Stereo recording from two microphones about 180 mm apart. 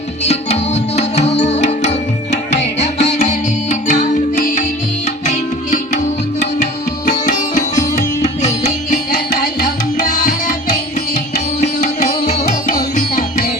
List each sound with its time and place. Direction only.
0.3 s music: 40° left (ahead or behind)
7.0 s sitar: 45° left (ahead or behind)
11.6 s music: 40° left (ahead or behind)